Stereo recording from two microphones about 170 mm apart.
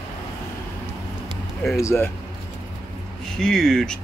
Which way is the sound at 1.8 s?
15° left (ahead or behind).